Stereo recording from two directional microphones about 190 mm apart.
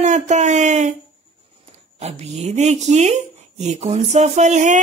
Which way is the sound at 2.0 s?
35° right (ahead or behind).